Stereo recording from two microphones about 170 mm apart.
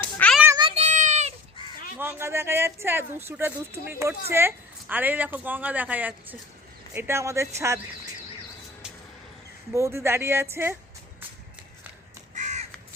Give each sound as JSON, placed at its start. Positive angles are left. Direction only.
{"t": 0.0, "sound": "child singing", "side_deg": 5}
{"t": 0.4, "sound": "a sound", "side_deg": -25}
{"t": 0.7, "sound": "child singing", "side_deg": -40}
{"t": 2.0, "sound": "speech", "side_deg": -15}
{"t": 9.7, "sound": "speech", "side_deg": -15}
{"t": 12.3, "sound": "crow", "side_deg": -45}